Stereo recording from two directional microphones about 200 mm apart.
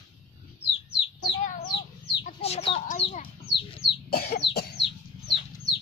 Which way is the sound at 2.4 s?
30° left (ahead or behind).